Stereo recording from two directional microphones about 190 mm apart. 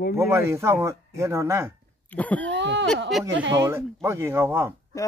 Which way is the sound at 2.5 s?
70° right (ahead or behind).